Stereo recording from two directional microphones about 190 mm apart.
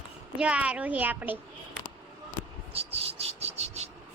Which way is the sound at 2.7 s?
30° right (ahead or behind).